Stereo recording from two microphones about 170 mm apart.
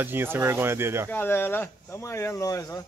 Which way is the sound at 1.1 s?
10° left (ahead or behind).